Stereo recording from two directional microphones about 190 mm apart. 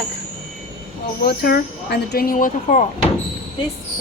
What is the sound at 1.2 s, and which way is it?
Speech, 55° left (ahead or behind).